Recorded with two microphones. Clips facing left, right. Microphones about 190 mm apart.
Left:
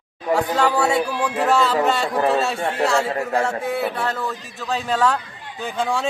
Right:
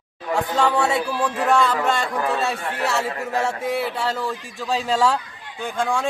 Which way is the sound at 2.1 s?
30° left (ahead or behind).